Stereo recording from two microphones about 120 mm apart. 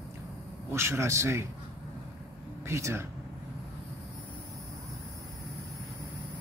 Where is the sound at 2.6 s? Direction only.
25° right (ahead or behind).